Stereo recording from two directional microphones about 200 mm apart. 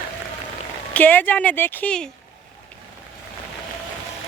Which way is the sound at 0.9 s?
10° left (ahead or behind).